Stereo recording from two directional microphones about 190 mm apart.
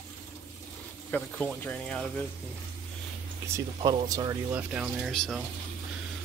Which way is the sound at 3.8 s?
20° right (ahead or behind).